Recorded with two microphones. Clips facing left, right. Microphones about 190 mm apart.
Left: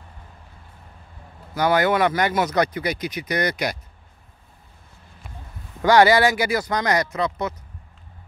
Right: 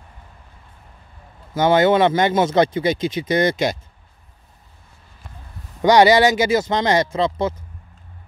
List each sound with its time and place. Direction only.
1.5 s speech: 25° right (ahead or behind)
5.8 s speech: 20° right (ahead or behind)